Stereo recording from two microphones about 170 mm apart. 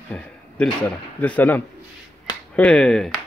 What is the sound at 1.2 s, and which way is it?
Speech, 10° left (ahead or behind).